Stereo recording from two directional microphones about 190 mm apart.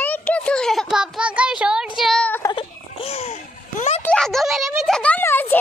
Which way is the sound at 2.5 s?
30° left (ahead or behind).